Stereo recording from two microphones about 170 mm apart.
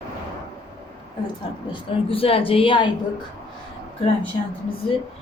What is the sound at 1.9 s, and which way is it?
Speech, 35° left (ahead or behind).